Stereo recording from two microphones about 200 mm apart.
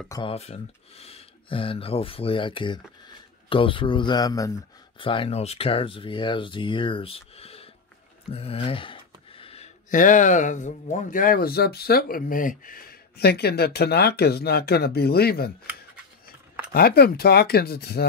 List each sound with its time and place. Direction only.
0.1 s speech: 25° left (ahead or behind); by 15.5 s 50° left (ahead or behind)
16.7 s speech: 50° left (ahead or behind)